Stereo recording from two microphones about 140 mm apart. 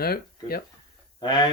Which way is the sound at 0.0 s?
90° left.